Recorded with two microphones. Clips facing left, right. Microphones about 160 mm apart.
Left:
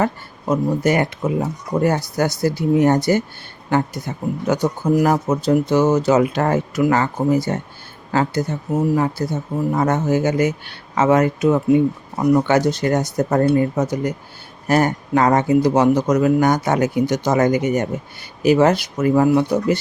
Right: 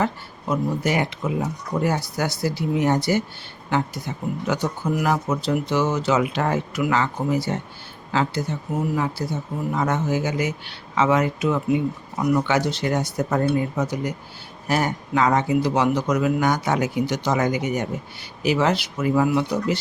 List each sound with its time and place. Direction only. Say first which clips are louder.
0.0 s speech: left 4 dB; 45° left (ahead or behind)